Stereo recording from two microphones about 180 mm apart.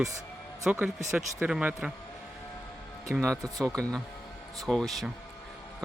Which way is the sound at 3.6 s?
5° left (ahead or behind).